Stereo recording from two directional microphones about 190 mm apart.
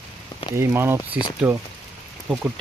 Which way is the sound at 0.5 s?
15° right (ahead or behind).